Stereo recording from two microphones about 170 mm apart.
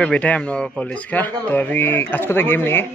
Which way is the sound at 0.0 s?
10° left (ahead or behind).